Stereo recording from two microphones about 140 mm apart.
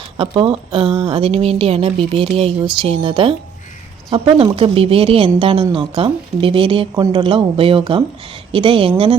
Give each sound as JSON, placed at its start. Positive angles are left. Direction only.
{"t": 0.2, "sound": "a woman's voice", "side_deg": -40}